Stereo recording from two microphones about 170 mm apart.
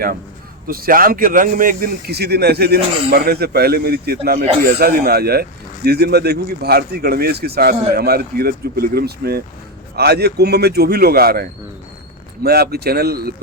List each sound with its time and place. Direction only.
0.7 s a man's voice: 55° right (ahead or behind)